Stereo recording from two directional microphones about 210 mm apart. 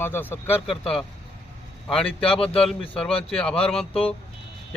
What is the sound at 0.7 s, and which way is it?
Speech, 25° left (ahead or behind).